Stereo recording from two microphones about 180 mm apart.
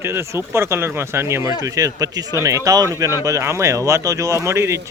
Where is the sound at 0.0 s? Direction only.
15° right (ahead or behind).